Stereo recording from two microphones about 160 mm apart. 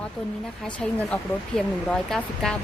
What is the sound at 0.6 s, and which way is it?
Speech, 5° left (ahead or behind).